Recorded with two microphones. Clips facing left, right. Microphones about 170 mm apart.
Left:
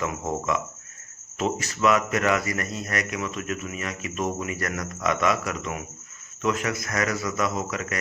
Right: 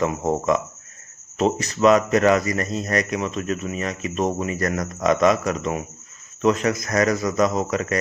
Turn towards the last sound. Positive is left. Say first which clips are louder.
# right 7 dB
turn(degrees=-35)  # may be behind; listen again after turning